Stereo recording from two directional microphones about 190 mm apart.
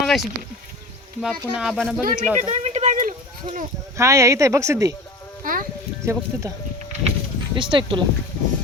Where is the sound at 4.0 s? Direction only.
15° right (ahead or behind).